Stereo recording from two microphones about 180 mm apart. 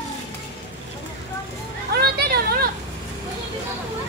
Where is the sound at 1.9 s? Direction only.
60° right (ahead or behind).